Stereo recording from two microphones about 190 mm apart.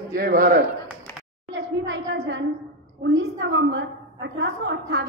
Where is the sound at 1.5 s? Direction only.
90° right.